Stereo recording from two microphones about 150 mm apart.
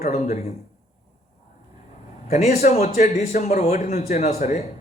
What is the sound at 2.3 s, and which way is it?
Speech, 50° left (ahead or behind).